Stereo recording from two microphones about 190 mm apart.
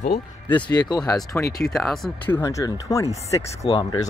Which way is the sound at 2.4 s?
15° left (ahead or behind).